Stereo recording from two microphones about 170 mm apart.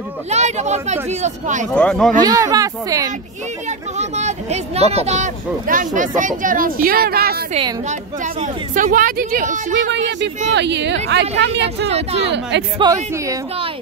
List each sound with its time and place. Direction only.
0.3 s speech: 40° right (ahead or behind)
1.7 s speech: 5° left (ahead or behind)
2.2 s speech: 20° right (ahead or behind)
3.6 s speech: 40° right (ahead or behind); by 7.4 s 65° right (ahead or behind)
7.9 s speech: 45° right (ahead or behind)
10.5 s speech: 90° right
11.9 s speech: 40° right (ahead or behind)
12.3 s speech: 90° right
12.7 s speech: 25° right (ahead or behind)